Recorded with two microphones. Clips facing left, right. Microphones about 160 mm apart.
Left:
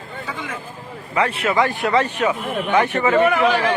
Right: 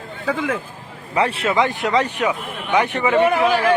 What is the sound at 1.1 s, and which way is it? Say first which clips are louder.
Speech: right 1 dB; 30° right (ahead or behind).